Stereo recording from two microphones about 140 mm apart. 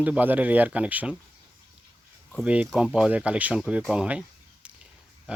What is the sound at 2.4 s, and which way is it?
A man's voice, 10° right (ahead or behind).